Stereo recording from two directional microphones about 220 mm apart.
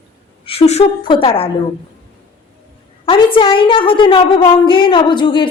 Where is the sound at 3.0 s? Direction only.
25° left (ahead or behind).